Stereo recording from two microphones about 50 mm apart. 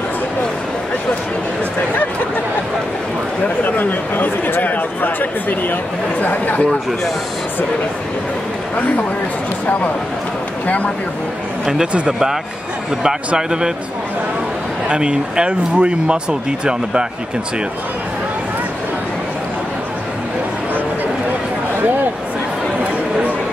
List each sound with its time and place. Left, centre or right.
3.4 s a sound: left
6.2 s speech: left
12.1 s speech: centre
14.9 s speech: centre